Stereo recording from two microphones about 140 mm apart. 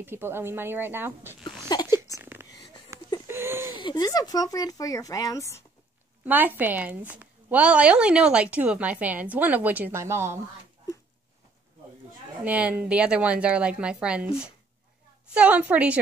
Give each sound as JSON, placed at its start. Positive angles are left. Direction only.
{"t": 0.0, "sound": "a woman's voice", "side_deg": -15}
{"t": 1.4, "sound": "a sound", "side_deg": 30}
{"t": 2.0, "sound": "a sound", "side_deg": -20}
{"t": 3.7, "sound": "speech", "side_deg": 30}
{"t": 6.2, "sound": "a woman's voice", "side_deg": -15}
{"t": 12.4, "sound": "a woman's voice", "side_deg": -10}